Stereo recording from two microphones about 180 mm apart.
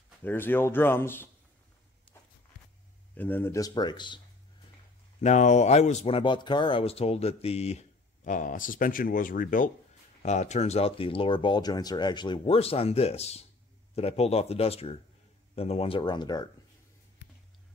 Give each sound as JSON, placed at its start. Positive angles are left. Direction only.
{"t": 0.2, "sound": "speech", "side_deg": 10}
{"t": 3.2, "sound": "speech", "side_deg": 10}
{"t": 5.2, "sound": "speech", "side_deg": 40}
{"t": 10.2, "sound": "speech", "side_deg": 40}